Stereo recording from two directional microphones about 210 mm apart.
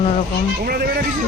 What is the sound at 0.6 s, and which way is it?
Speech, 45° right (ahead or behind).